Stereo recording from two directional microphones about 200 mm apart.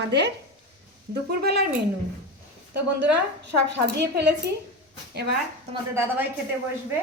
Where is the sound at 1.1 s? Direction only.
55° right (ahead or behind).